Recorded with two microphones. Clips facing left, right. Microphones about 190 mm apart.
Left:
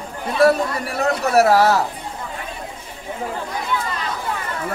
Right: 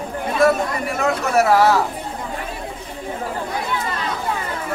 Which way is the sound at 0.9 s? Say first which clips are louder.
Left 2 dB; 40° left (ahead or behind).